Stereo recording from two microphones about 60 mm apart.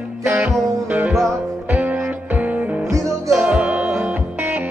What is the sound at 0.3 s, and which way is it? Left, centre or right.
Music, right.